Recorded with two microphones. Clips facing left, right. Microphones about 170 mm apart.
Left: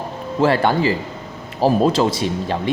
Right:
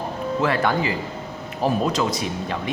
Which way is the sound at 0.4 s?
30° left (ahead or behind).